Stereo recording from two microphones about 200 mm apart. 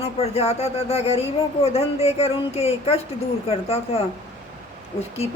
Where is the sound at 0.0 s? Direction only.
30° left (ahead or behind).